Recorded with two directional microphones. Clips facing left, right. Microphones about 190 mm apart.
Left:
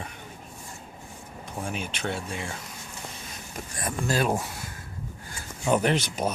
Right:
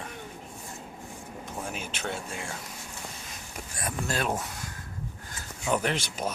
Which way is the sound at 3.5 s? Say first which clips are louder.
Left 2 dB; centre (ahead or behind).